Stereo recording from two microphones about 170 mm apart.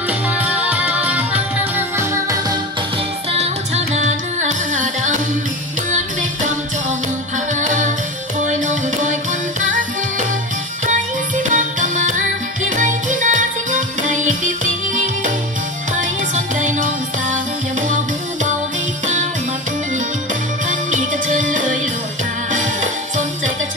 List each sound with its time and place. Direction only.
0.4 s music: 10° right (ahead or behind)
3.3 s music: 40° right (ahead or behind)
7.6 s music: 50° right (ahead or behind)
11.4 s music: 50° right (ahead or behind)
16.5 s music: 50° right (ahead or behind)
20.9 s music: 50° right (ahead or behind)